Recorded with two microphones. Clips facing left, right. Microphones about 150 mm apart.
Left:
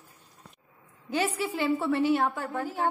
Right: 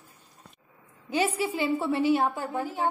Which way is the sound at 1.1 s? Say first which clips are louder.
Right 2 dB; 10° right (ahead or behind).